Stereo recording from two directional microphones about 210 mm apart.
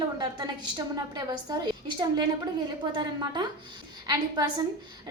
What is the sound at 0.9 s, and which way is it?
A woman's voice, 20° right (ahead or behind).